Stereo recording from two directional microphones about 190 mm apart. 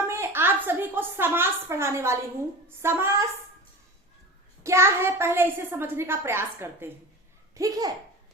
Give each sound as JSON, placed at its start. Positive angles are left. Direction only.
{"t": 0.1, "sound": "a woman's voice", "side_deg": -10}
{"t": 4.6, "sound": "a child's voice", "side_deg": -15}